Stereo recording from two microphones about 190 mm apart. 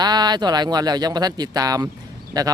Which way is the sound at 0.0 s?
20° right (ahead or behind).